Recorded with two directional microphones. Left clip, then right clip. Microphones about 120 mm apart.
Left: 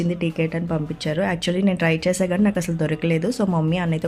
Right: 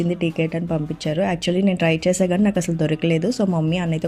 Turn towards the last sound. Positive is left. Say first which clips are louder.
# even
turn(degrees=-20)  # may be behind; listen again after turning